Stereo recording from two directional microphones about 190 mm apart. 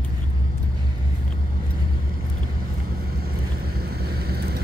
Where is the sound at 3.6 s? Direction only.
55° right (ahead or behind).